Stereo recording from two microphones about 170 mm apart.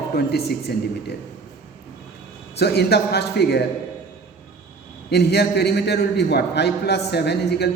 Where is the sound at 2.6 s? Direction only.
75° left (ahead or behind).